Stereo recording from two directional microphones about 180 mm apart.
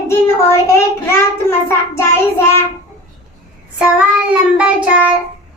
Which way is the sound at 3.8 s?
5° right (ahead or behind).